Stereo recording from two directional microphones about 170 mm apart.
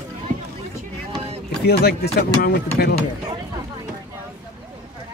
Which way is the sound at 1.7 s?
65° left (ahead or behind).